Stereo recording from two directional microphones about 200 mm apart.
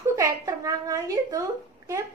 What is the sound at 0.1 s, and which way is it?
A woman's voice, 15° right (ahead or behind).